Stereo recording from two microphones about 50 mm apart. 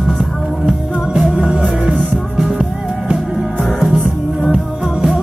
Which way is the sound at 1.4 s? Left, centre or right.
Right.